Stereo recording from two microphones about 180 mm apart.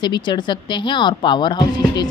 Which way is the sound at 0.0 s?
25° left (ahead or behind).